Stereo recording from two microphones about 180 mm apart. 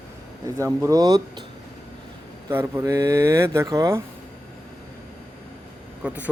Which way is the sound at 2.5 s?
15° right (ahead or behind).